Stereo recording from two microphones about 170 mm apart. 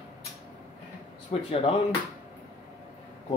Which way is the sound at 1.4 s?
35° left (ahead or behind).